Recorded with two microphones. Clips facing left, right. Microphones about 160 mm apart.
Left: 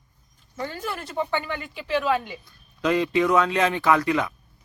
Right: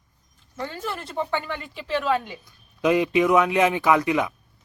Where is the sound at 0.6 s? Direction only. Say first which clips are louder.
Even; 5° left (ahead or behind).